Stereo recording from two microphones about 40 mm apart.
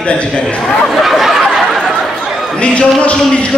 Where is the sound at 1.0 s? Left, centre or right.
Centre.